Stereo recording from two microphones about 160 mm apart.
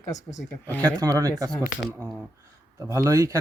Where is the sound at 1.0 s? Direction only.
20° right (ahead or behind).